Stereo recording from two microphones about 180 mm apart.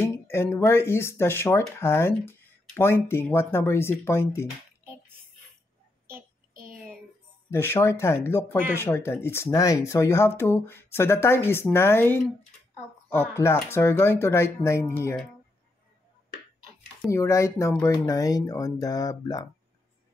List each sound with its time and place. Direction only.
0.0 s speech: 15° left (ahead or behind)
6.0 s child singing: 55° right (ahead or behind)
7.5 s speech: 15° left (ahead or behind)
13.3 s speech: 15° left (ahead or behind)
17.1 s speech: 15° left (ahead or behind)